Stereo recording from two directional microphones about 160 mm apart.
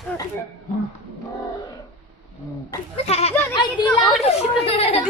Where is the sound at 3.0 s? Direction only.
40° left (ahead or behind).